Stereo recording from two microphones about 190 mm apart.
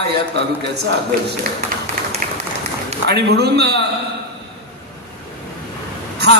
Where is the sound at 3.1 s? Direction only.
60° right (ahead or behind).